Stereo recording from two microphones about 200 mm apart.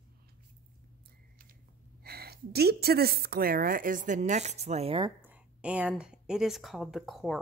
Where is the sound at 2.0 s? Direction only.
50° right (ahead or behind); by 5.1 s 25° right (ahead or behind).